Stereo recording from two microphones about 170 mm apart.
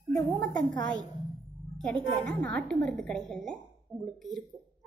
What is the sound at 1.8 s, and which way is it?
A woman's voice, 5° left (ahead or behind).